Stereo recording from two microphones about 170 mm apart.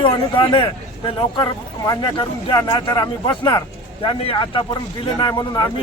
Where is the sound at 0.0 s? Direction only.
30° left (ahead or behind).